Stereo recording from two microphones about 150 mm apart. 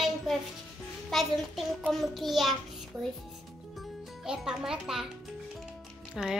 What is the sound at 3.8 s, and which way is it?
Speech, 5° right (ahead or behind).